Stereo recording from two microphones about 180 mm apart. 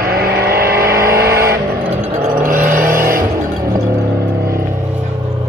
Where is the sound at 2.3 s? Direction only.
50° right (ahead or behind).